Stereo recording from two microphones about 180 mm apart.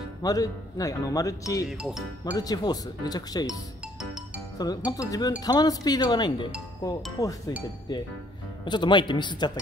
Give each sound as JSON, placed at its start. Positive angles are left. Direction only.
{"t": 0.2, "sound": "speech", "side_deg": 20}
{"t": 1.7, "sound": "speech", "side_deg": -5}
{"t": 2.3, "sound": "speech", "side_deg": 20}
{"t": 4.9, "sound": "speech", "side_deg": 20}